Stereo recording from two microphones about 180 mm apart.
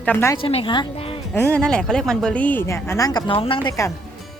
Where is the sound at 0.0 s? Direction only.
10° left (ahead or behind).